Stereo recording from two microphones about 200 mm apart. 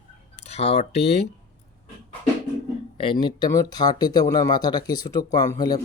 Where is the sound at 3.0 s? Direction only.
25° left (ahead or behind).